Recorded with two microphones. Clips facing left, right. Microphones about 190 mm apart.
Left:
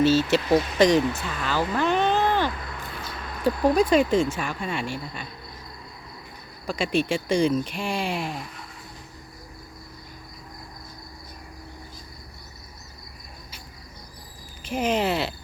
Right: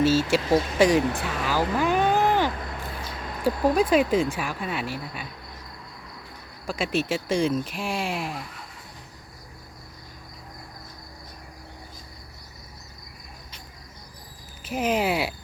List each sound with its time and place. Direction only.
0.0 s speech: 5° right (ahead or behind)
1.1 s speech: 75° right (ahead or behind)
1.5 s speech: 10° right (ahead or behind)
6.7 s speech: centre (ahead or behind)
14.6 s speech: 5° right (ahead or behind)